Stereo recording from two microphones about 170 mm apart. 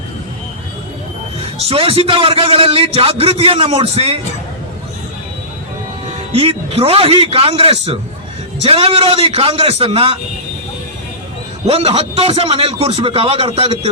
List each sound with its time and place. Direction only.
1.4 s a man's voice: 35° right (ahead or behind)
6.3 s a man's voice: 35° right (ahead or behind)
11.6 s a man's voice: 35° right (ahead or behind)